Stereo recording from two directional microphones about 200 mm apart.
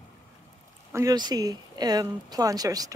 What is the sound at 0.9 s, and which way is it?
Speech, 20° right (ahead or behind).